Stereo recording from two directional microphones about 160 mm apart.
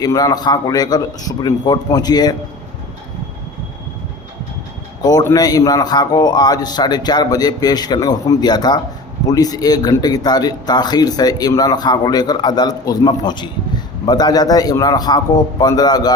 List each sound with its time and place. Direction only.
0.0 s speech: 25° left (ahead or behind)
5.0 s speech: 25° left (ahead or behind)